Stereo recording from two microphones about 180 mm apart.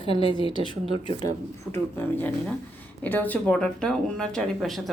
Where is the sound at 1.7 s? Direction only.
10° left (ahead or behind).